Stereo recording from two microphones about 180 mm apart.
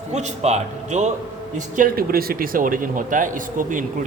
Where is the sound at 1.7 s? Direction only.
55° right (ahead or behind).